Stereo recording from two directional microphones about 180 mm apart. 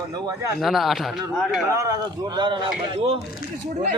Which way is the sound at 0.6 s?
Centre (ahead or behind).